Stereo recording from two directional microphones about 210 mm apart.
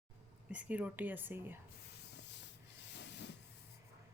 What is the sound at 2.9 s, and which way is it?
Rub, 55° left (ahead or behind).